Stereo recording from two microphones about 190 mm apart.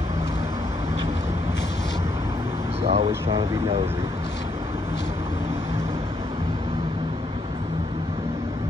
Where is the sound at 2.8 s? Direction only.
30° right (ahead or behind).